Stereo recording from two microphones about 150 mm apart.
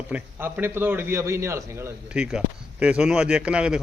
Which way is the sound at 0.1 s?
10° right (ahead or behind).